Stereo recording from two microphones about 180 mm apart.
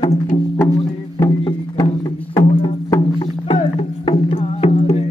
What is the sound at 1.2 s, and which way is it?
Music, 25° left (ahead or behind).